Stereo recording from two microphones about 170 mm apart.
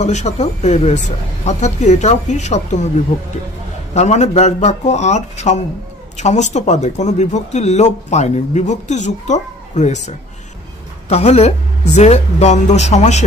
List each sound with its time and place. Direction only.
0.0 s speech: 40° left (ahead or behind)
3.9 s speech: 40° left (ahead or behind)